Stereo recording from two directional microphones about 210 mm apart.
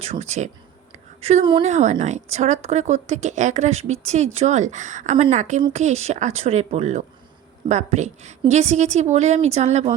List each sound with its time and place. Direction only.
0.0 s a woman's voice: 30° right (ahead or behind)